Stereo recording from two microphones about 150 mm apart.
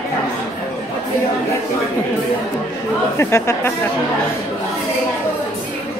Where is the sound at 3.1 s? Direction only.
20° left (ahead or behind).